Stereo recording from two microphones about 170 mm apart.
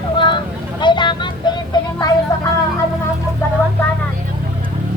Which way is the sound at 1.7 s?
20° left (ahead or behind).